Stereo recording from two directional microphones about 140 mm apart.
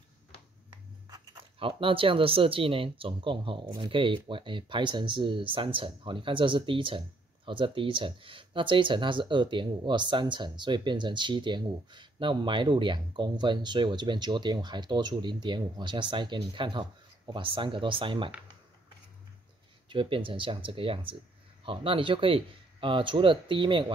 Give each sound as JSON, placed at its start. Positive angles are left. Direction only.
{"t": 1.1, "sound": "a sound", "side_deg": -30}
{"t": 1.8, "sound": "speech", "side_deg": -40}
{"t": 19.9, "sound": "speech", "side_deg": -35}